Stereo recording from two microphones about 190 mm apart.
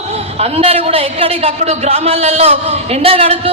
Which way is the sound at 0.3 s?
30° right (ahead or behind).